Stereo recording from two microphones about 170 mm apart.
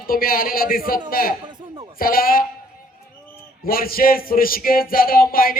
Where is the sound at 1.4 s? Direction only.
25° right (ahead or behind).